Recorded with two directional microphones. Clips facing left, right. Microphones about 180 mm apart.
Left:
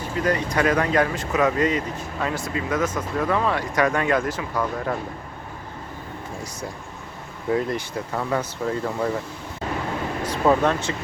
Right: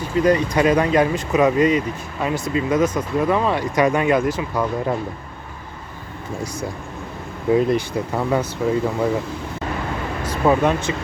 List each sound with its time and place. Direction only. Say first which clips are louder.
0.2 s speech: right 6 dB; 15° right (ahead or behind)
7.5 s speech: right 6 dB; 20° right (ahead or behind)
10.4 s speech: right 2 dB; 10° right (ahead or behind)